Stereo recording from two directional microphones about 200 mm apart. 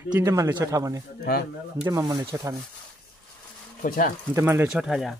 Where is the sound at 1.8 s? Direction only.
20° right (ahead or behind).